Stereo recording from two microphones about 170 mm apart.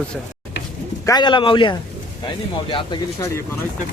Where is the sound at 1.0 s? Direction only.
25° left (ahead or behind).